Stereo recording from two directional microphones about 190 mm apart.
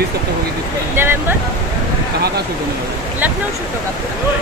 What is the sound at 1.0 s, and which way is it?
Speech, 10° right (ahead or behind).